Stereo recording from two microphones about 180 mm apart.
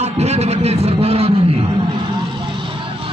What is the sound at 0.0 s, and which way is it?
A man's voice, 35° right (ahead or behind).